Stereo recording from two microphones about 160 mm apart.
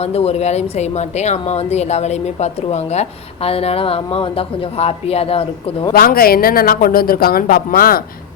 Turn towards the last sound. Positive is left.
turn(degrees=65)  # may be behind; listen again after turning